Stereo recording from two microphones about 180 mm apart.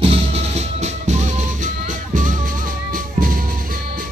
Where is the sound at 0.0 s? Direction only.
35° right (ahead or behind).